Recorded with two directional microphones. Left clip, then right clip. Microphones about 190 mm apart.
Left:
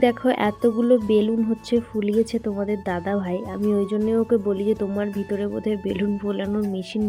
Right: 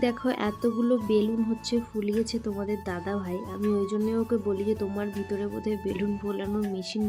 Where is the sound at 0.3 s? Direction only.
15° left (ahead or behind).